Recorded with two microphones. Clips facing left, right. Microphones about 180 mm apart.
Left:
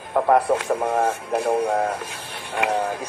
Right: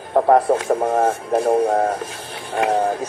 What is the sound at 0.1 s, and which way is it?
Speech, 30° right (ahead or behind).